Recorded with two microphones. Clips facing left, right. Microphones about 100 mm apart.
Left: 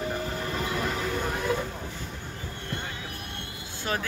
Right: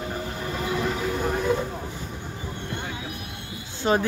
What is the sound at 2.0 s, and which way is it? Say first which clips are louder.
Music: right 3 dB; 15° right (ahead or behind).